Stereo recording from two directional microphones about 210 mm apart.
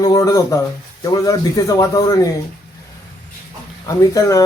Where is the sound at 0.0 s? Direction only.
15° left (ahead or behind).